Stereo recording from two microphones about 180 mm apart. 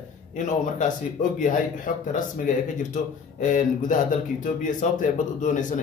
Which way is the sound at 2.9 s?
45° left (ahead or behind).